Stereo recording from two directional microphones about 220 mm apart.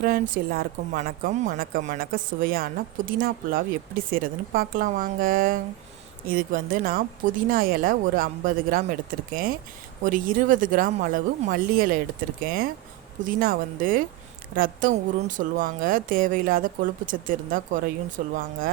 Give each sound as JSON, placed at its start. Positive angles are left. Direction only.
{"t": 0.0, "sound": "a woman's voice", "side_deg": -40}